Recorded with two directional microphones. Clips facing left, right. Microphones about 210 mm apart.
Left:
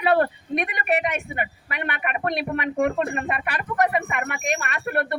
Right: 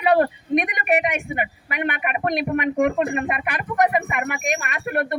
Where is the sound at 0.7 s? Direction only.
15° right (ahead or behind).